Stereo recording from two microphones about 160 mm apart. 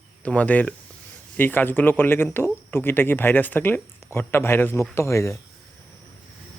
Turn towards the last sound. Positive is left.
turn(degrees=20)  # may be behind; listen again after turning